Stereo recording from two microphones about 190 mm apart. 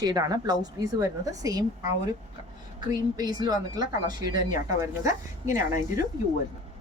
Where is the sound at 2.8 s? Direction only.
20° right (ahead or behind).